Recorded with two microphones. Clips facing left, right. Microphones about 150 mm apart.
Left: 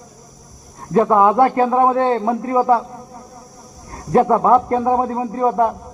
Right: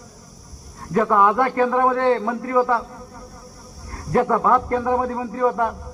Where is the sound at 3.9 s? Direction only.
25° left (ahead or behind).